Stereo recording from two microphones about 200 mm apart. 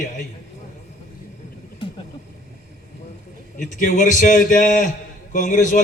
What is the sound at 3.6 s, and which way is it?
A man's voice, 40° left (ahead or behind).